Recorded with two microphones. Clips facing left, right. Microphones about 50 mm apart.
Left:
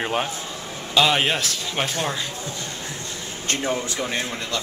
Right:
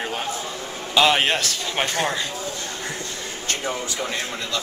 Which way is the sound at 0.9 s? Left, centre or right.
Centre.